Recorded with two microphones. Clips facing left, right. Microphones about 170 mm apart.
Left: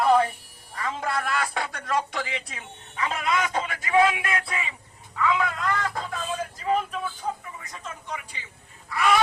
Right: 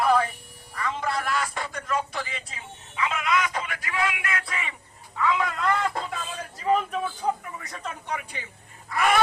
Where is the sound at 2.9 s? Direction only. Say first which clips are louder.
Right 1 dB; 40° left (ahead or behind).